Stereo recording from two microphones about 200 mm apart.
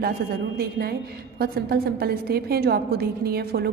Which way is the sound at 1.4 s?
50° right (ahead or behind).